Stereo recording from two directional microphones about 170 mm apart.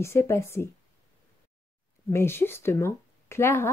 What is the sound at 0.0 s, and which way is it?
Speech, 15° left (ahead or behind).